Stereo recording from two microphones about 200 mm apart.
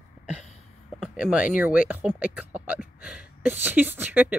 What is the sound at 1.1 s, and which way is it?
Speech, 5° right (ahead or behind).